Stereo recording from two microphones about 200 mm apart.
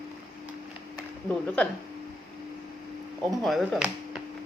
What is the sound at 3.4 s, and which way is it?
Speech, centre (ahead or behind).